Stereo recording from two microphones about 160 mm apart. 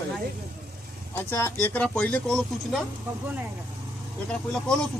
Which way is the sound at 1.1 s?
15° left (ahead or behind).